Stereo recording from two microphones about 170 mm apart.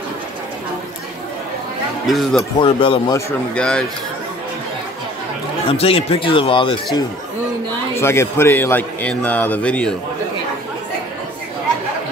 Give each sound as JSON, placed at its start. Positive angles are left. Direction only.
{"t": 2.0, "sound": "speech", "side_deg": 0}
{"t": 2.6, "sound": "speech", "side_deg": 30}
{"t": 3.5, "sound": "speech", "side_deg": 5}
{"t": 5.7, "sound": "speech", "side_deg": 35}
{"t": 7.9, "sound": "a man's voice", "side_deg": 15}